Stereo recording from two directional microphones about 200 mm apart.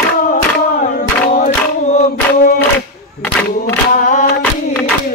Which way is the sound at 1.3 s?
35° left (ahead or behind).